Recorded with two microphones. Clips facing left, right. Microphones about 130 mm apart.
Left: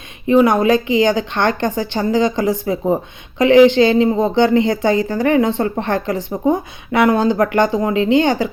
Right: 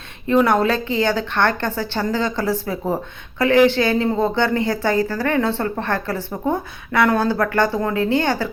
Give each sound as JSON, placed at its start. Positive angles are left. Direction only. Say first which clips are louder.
{"t": 0.3, "sound": "speech", "louder": "left 4 dB", "side_deg": 15}